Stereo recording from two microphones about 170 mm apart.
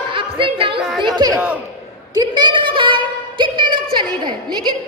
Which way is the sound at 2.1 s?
25° right (ahead or behind).